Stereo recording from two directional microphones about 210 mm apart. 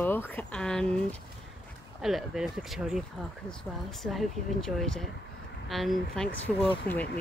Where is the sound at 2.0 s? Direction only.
Centre (ahead or behind).